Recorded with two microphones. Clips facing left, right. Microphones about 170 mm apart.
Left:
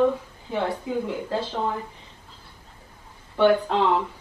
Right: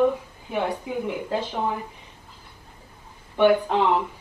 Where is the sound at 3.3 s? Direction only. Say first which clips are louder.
Right 1 dB; 15° right (ahead or behind).